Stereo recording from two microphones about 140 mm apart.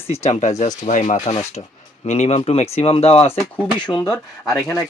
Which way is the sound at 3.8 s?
30° left (ahead or behind).